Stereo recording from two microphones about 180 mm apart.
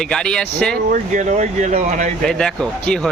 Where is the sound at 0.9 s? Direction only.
45° right (ahead or behind).